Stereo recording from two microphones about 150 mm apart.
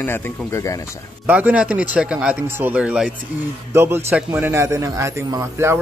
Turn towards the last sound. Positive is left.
turn(degrees=-20)  # may be behind; listen again after turning